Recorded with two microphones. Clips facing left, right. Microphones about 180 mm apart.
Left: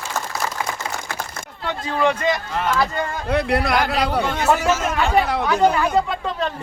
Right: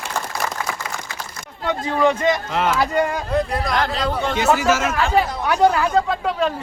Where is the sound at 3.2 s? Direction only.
80° left.